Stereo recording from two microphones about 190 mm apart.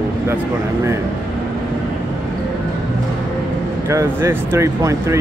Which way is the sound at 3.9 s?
15° right (ahead or behind).